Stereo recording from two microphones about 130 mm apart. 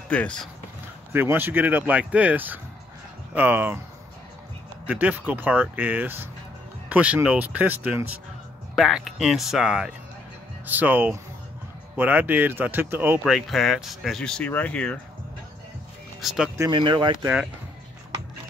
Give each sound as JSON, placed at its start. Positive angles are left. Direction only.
{"t": 0.1, "sound": "speech", "side_deg": 10}
{"t": 1.1, "sound": "speech", "side_deg": -15}
{"t": 4.8, "sound": "speech", "side_deg": -10}
{"t": 13.2, "sound": "speech", "side_deg": 0}
{"t": 16.2, "sound": "speech", "side_deg": 0}
{"t": 16.7, "sound": "speech", "side_deg": -35}